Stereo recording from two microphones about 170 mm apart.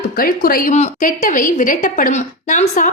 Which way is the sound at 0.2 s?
60° left (ahead or behind).